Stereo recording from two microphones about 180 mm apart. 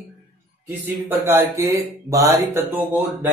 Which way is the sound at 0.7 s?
10° right (ahead or behind).